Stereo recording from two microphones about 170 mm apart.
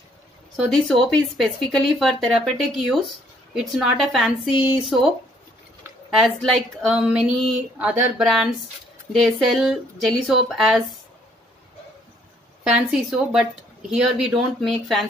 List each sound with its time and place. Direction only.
0.7 s a woman's voice: centre (ahead or behind)
12.6 s a woman's voice: 5° right (ahead or behind)